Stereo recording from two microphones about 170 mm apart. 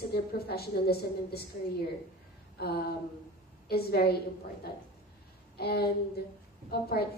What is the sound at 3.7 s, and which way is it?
Speech, 65° left (ahead or behind).